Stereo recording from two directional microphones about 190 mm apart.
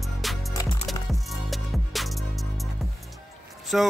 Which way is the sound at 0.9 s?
Centre (ahead or behind).